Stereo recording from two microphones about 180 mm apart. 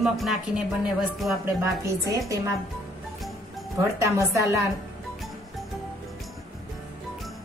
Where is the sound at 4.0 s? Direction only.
15° right (ahead or behind).